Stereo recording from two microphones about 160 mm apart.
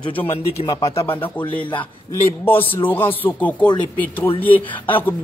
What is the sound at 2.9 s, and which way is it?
A man's voice, 10° left (ahead or behind).